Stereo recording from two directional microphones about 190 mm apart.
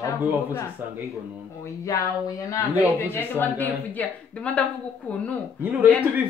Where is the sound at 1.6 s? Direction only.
15° left (ahead or behind).